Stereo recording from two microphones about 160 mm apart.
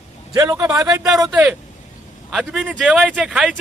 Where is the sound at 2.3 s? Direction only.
5° right (ahead or behind).